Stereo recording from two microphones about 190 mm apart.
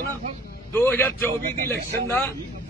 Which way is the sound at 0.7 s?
10° left (ahead or behind).